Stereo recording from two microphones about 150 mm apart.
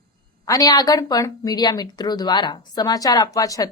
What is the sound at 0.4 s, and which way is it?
A woman's voice, 25° left (ahead or behind).